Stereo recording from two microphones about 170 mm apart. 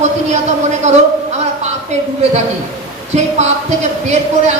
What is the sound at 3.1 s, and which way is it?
A woman's voice, 40° right (ahead or behind).